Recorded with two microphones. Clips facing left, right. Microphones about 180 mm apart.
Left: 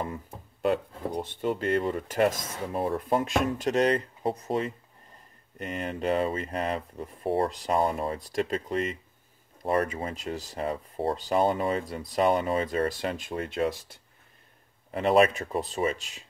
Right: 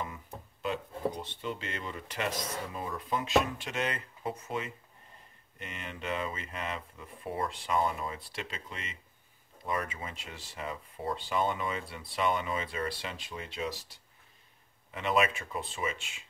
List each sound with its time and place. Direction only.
0.0 s speech: 45° left (ahead or behind)
14.9 s speech: 40° left (ahead or behind)